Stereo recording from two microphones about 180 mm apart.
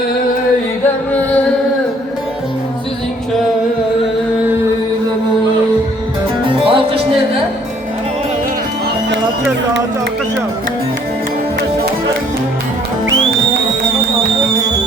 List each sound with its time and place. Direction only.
6.7 s music: 30° right (ahead or behind)